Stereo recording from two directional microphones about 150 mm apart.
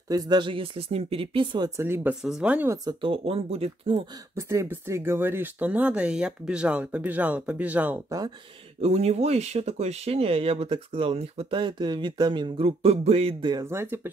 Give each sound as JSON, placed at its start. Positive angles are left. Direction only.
{"t": 0.1, "sound": "speech", "side_deg": -25}
{"t": 1.8, "sound": "speech", "side_deg": -15}
{"t": 2.8, "sound": "speech", "side_deg": -30}
{"t": 4.1, "sound": "speech", "side_deg": -20}
{"t": 8.8, "sound": "speech", "side_deg": -45}
{"t": 13.7, "sound": "speech", "side_deg": -15}